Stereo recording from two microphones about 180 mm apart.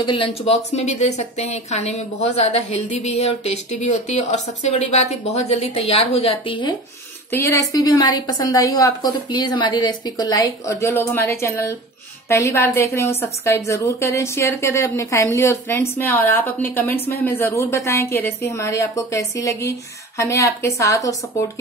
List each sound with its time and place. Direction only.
0.0 s a woman's voice: 30° left (ahead or behind)
7.2 s a woman's voice: 15° left (ahead or behind)